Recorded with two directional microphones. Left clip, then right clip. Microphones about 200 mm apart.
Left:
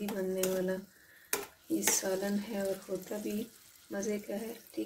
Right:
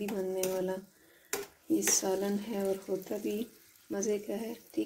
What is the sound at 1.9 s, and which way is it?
Speech, 25° right (ahead or behind).